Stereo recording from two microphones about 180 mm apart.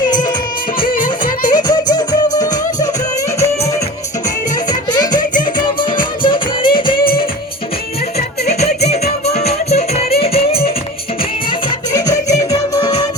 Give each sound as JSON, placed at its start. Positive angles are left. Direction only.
{"t": 0.0, "sound": "music", "side_deg": 25}
{"t": 1.5, "sound": "music", "side_deg": 25}
{"t": 4.7, "sound": "music", "side_deg": 25}
{"t": 8.4, "sound": "music", "side_deg": 40}
{"t": 11.9, "sound": "music", "side_deg": 20}